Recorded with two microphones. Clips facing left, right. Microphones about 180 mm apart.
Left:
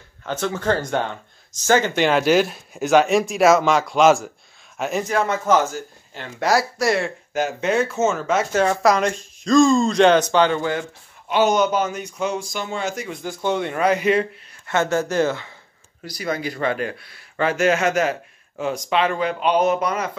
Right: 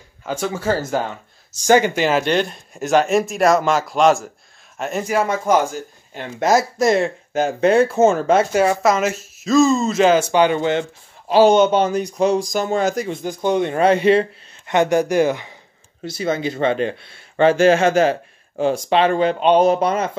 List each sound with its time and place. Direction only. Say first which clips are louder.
0.2 s speech: right 1 dB; 10° right (ahead or behind)
2.0 s speech: left 1 dB; centre (ahead or behind)
5.0 s speech: right 4 dB; 10° right (ahead or behind); by 8.5 s 30° right (ahead or behind)
8.5 s speech: right 1 dB; 10° right (ahead or behind); by 13.1 s 40° right (ahead or behind)
13.1 s speech: right 4 dB; 20° right (ahead or behind)
14.7 s speech: right 4 dB; 15° right (ahead or behind)